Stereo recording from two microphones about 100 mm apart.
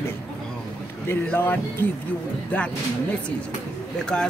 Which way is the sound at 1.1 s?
20° left (ahead or behind).